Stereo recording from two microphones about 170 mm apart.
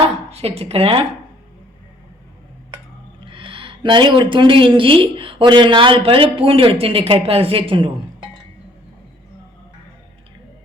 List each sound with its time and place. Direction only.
0.3 s speech: 35° right (ahead or behind)
3.2 s speech: 30° right (ahead or behind)